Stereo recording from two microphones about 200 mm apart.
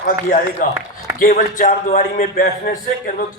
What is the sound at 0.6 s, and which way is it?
A man's voice, 40° left (ahead or behind).